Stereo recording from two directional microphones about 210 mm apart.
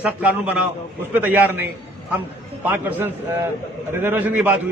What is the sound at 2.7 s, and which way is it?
A man's voice, 10° right (ahead or behind).